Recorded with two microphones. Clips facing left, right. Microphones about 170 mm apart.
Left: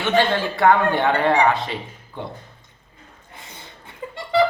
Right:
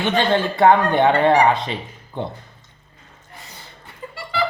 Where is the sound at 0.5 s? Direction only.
20° right (ahead or behind).